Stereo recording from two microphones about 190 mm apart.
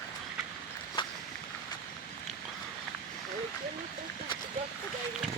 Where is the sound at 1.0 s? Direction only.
25° left (ahead or behind).